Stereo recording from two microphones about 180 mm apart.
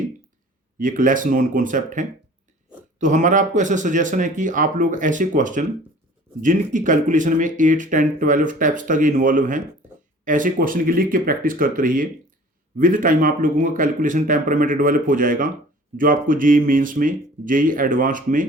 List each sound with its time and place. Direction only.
0.8 s speech: 50° right (ahead or behind)